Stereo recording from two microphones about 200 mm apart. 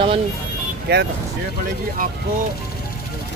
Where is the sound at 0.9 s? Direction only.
55° right (ahead or behind).